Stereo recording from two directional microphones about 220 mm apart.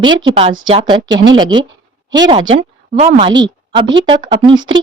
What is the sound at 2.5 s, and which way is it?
Speech, 30° right (ahead or behind).